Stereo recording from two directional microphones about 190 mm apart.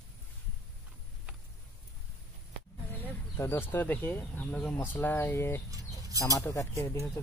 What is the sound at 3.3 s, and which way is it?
Speech, 15° left (ahead or behind).